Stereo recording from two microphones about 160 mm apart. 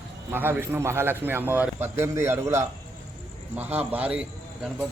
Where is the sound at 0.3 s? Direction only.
15° right (ahead or behind).